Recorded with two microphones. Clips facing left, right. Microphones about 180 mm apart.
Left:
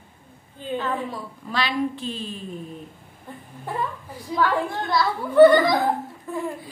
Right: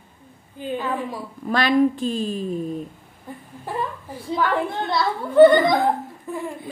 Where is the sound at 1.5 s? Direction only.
50° right (ahead or behind).